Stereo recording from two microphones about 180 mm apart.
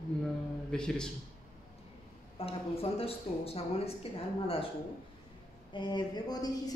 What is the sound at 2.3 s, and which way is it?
Speech, 35° left (ahead or behind).